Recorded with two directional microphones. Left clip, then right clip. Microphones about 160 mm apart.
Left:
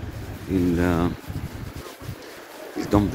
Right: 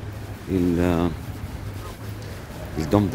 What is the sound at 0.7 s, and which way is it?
Speech, 30° right (ahead or behind).